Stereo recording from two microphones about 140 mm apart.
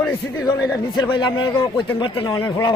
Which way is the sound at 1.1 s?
35° left (ahead or behind).